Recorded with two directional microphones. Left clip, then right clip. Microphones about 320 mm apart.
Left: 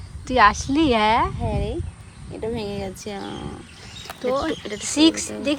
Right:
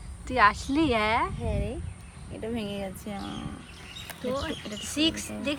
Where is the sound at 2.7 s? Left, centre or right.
Left.